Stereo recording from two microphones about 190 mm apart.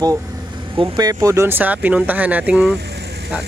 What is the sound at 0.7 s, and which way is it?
Speech, 20° right (ahead or behind).